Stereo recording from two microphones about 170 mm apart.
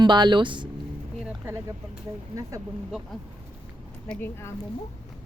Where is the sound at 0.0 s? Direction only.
25° right (ahead or behind).